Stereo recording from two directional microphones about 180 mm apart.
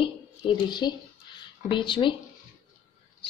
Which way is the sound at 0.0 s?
25° left (ahead or behind).